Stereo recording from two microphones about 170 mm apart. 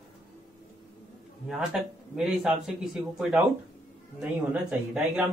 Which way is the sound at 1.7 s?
Centre (ahead or behind).